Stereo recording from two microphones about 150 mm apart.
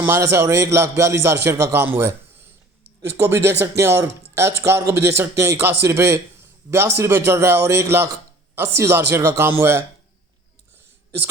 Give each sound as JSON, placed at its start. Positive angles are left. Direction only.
{"t": 0.0, "sound": "a man's voice", "side_deg": -15}